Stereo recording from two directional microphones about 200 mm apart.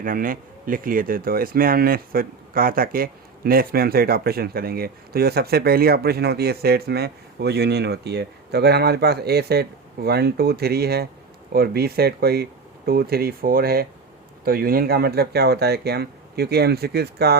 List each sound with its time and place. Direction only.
0.0 s speech: 45° right (ahead or behind)